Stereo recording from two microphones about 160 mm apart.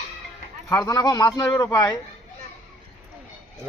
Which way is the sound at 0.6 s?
20° left (ahead or behind).